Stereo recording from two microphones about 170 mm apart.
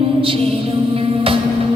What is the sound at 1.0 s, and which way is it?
Music, 35° right (ahead or behind).